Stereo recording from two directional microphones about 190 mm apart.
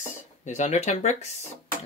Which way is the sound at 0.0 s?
40° left (ahead or behind).